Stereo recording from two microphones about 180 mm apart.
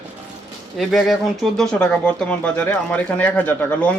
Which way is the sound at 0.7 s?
Centre (ahead or behind).